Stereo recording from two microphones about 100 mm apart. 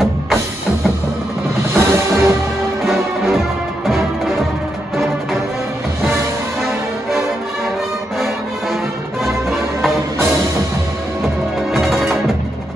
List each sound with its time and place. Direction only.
1.7 s music: 25° right (ahead or behind)
2.8 s music: centre (ahead or behind)
6.6 s music: centre (ahead or behind)
9.2 s music: centre (ahead or behind)
11.7 s music: centre (ahead or behind)